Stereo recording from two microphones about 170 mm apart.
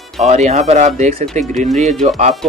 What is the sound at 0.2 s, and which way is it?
Speech, 40° right (ahead or behind).